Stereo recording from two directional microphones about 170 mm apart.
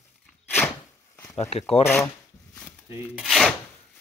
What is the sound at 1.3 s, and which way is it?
Speech, 35° left (ahead or behind).